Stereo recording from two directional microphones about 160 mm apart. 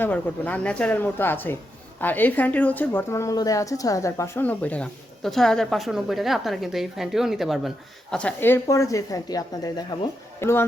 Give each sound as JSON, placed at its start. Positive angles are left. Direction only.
{"t": 0.0, "sound": "a woman's voice", "side_deg": 10}
{"t": 8.1, "sound": "a woman's voice", "side_deg": 10}